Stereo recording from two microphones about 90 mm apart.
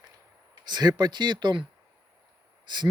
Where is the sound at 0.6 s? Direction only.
50° right (ahead or behind).